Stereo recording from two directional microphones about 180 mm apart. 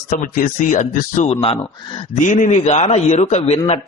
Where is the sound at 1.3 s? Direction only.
30° left (ahead or behind).